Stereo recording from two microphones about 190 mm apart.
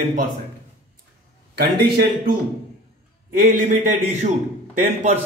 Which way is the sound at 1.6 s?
55° right (ahead or behind).